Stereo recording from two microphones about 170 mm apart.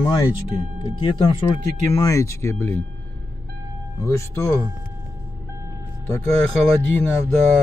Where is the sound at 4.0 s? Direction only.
15° left (ahead or behind).